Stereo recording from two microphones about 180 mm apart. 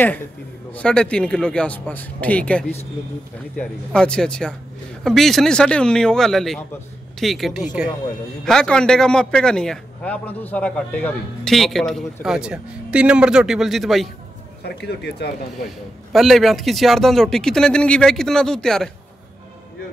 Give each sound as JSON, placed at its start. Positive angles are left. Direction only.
{"t": 0.7, "sound": "a man's voice", "side_deg": 5}
{"t": 14.6, "sound": "speech", "side_deg": 65}
{"t": 16.1, "sound": "a man's voice", "side_deg": 0}